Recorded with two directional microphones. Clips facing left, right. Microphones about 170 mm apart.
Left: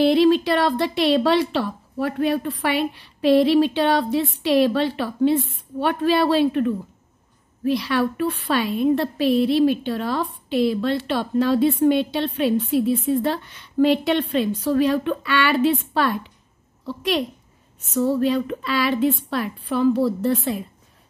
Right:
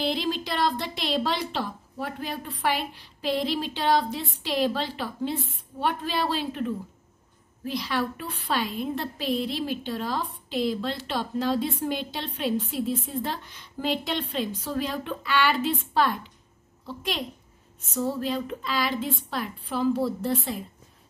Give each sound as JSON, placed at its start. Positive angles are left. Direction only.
{"t": 0.0, "sound": "a woman's voice", "side_deg": 65}